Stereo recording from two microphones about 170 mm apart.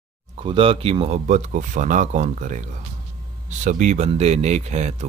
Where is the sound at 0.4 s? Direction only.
30° right (ahead or behind).